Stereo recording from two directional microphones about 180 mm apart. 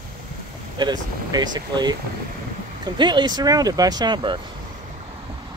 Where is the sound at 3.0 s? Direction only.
25° right (ahead or behind).